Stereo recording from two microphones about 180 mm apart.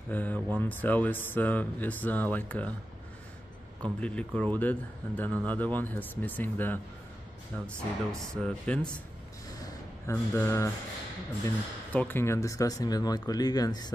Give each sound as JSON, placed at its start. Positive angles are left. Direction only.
{"t": 0.1, "sound": "speech", "side_deg": 10}
{"t": 4.0, "sound": "speech", "side_deg": 5}
{"t": 9.6, "sound": "a sound", "side_deg": 15}
{"t": 11.4, "sound": "speech", "side_deg": 10}